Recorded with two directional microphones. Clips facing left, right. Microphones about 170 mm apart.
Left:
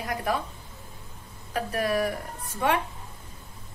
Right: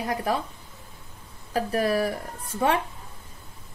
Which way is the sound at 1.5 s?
30° right (ahead or behind).